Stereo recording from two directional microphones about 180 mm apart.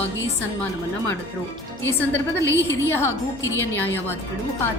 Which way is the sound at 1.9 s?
10° left (ahead or behind).